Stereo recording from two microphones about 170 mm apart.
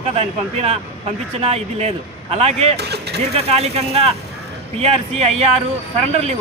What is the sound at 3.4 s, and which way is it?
Speech, 35° right (ahead or behind).